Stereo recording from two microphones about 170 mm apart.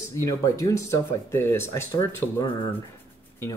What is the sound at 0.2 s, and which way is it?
Speech, 20° left (ahead or behind).